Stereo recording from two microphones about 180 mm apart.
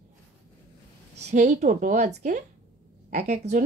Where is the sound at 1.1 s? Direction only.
40° right (ahead or behind).